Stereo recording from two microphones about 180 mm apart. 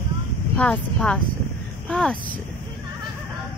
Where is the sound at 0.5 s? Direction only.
5° left (ahead or behind).